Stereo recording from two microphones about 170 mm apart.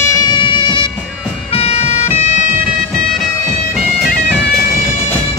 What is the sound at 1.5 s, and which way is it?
Bagpipes, 35° left (ahead or behind).